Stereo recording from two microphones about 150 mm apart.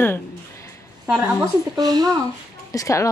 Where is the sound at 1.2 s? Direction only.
20° right (ahead or behind).